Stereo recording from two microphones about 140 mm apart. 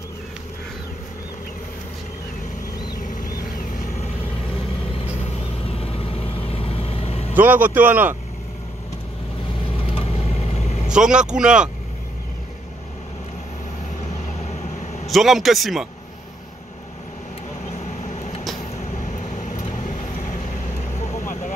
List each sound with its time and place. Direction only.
5.7 s vehicle: 40° left (ahead or behind)
7.3 s speech: 15° right (ahead or behind)
9.8 s vehicle: 45° left (ahead or behind)
10.9 s speech: 5° right (ahead or behind)
15.0 s speech: centre (ahead or behind)
18.0 s a sound: 55° left (ahead or behind)
19.0 s vehicle: 55° left (ahead or behind)